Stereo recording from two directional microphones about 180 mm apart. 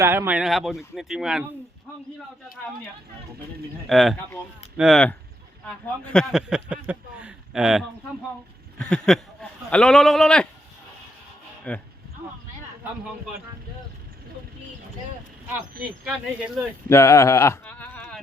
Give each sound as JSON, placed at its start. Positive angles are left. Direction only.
{"t": 0.0, "sound": "speech", "side_deg": -15}
{"t": 3.8, "sound": "speech", "side_deg": 0}
{"t": 11.7, "sound": "speech", "side_deg": 10}
{"t": 16.0, "sound": "speech", "side_deg": -5}
{"t": 16.9, "sound": "a sound", "side_deg": 15}